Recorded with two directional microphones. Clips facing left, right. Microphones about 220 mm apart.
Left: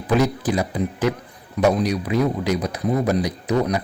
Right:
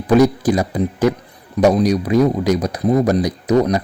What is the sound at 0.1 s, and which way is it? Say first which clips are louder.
Speech: right 7 dB; 40° right (ahead or behind).